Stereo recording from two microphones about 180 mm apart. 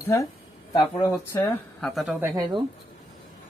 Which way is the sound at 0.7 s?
25° left (ahead or behind).